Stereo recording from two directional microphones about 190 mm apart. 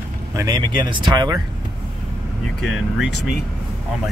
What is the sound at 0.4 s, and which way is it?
Speech, 20° right (ahead or behind).